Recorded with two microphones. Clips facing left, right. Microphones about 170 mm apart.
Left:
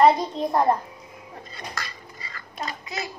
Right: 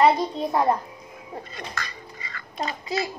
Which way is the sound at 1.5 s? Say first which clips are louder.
Right 1 dB; 35° left (ahead or behind).